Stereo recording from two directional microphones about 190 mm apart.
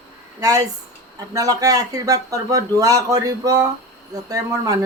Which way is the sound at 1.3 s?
20° right (ahead or behind).